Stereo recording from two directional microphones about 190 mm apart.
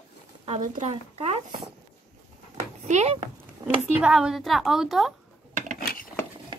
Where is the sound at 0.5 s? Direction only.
40° right (ahead or behind).